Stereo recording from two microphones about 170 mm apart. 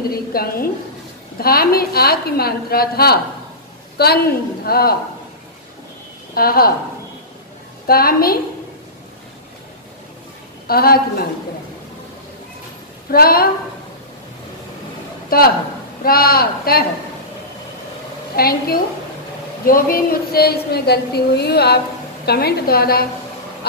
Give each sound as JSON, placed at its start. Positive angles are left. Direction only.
{"t": 0.1, "sound": "a sound", "side_deg": 60}
{"t": 1.4, "sound": "a woman's voice", "side_deg": 60}
{"t": 6.3, "sound": "a woman's voice", "side_deg": 60}
{"t": 7.8, "sound": "a woman's voice", "side_deg": 60}
{"t": 10.7, "sound": "a woman's voice", "side_deg": 60}
{"t": 13.1, "sound": "a woman's voice", "side_deg": 60}
{"t": 15.2, "sound": "a man's voice", "side_deg": 60}
{"t": 18.3, "sound": "a woman's voice", "side_deg": 65}